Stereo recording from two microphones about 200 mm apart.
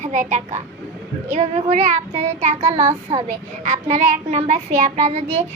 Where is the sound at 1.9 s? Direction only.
35° right (ahead or behind).